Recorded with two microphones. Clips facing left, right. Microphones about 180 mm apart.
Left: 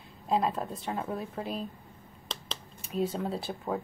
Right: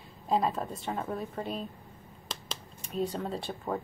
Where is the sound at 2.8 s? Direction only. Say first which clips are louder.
Left 2 dB; 5° left (ahead or behind).